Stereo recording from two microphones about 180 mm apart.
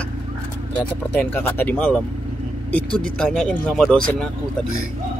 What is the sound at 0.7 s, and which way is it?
Speech, 10° left (ahead or behind).